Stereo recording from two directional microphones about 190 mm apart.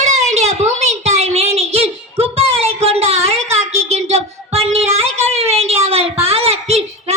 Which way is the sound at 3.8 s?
35° right (ahead or behind).